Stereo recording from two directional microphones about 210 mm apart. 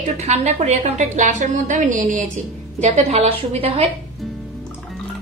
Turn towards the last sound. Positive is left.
turn(degrees=-30)  # may be behind; listen again after turning